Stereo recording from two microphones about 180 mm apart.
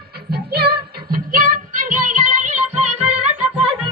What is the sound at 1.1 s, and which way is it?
Music, 50° right (ahead or behind).